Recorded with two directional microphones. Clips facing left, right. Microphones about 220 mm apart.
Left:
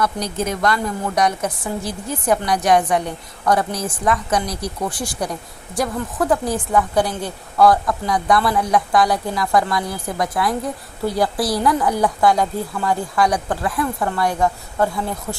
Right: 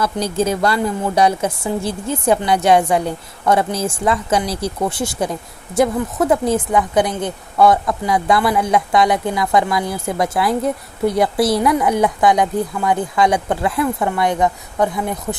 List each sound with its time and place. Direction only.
0.0 s speech: 30° right (ahead or behind)